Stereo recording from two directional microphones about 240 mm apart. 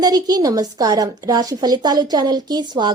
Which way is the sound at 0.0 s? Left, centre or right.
Centre.